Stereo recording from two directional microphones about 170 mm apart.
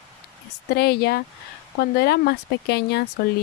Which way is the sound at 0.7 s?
70° left (ahead or behind).